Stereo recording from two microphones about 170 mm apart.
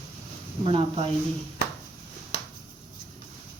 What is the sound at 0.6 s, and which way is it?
Speech, 35° right (ahead or behind).